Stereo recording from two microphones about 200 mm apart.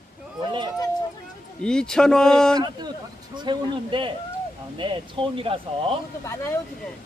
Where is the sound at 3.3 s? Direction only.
20° right (ahead or behind).